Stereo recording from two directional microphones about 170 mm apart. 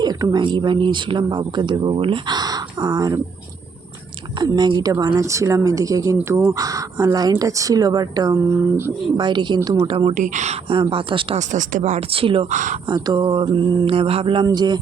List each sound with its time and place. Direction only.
0.0 s speech: 25° right (ahead or behind)
4.4 s speech: 25° right (ahead or behind)
9.8 s speech: 30° right (ahead or behind)
10.2 s speech: 45° right (ahead or behind)
11.3 s speech: 50° right (ahead or behind); by 12.5 s 35° right (ahead or behind)
12.5 s speech: 45° right (ahead or behind)
12.9 s speech: 25° right (ahead or behind)